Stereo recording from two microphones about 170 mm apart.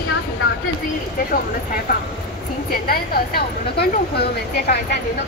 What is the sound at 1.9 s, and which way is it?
A man's voice, 60° left (ahead or behind).